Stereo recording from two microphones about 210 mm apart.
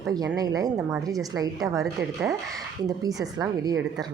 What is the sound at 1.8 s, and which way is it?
Speech, centre (ahead or behind).